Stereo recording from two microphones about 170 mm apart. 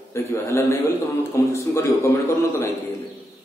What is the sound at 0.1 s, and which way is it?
A man's voice, 15° left (ahead or behind).